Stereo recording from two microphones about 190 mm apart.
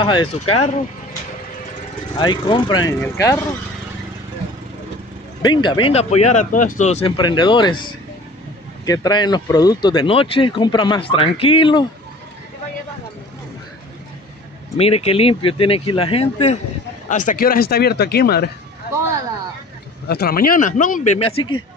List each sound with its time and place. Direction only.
0.0 s speech: 25° left (ahead or behind)
2.1 s speech: 25° left (ahead or behind)
5.4 s speech: 25° left (ahead or behind)
8.8 s speech: 20° left (ahead or behind)
14.8 s speech: 30° left (ahead or behind)
17.1 s speech: 45° left (ahead or behind)
20.1 s speech: 55° left (ahead or behind); by 21.5 s 30° left (ahead or behind)